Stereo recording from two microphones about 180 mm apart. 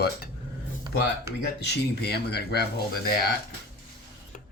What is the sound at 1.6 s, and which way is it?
Speech, 65° left (ahead or behind).